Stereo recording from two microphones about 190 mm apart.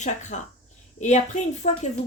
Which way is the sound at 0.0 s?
40° left (ahead or behind).